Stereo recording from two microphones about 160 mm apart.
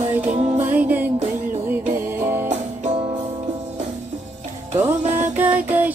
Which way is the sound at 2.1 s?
15° right (ahead or behind).